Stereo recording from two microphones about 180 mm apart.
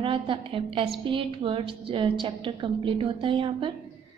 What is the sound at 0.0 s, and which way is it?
A woman's voice, 30° right (ahead or behind).